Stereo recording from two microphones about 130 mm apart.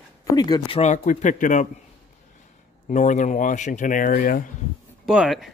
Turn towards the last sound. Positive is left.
turn(degrees=-5)  # may be behind; listen again after turning